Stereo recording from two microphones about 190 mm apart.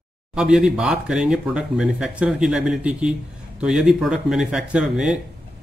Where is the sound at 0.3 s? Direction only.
5° right (ahead or behind).